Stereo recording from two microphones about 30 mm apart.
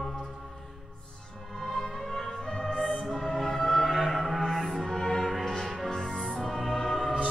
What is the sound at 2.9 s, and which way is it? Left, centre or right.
Music, left.